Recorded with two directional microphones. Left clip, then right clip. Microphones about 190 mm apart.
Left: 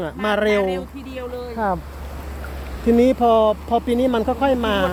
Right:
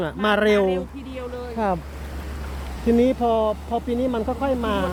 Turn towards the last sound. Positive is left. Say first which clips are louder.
# left 5 dB
turn(degrees=15)  # may be behind; listen again after turning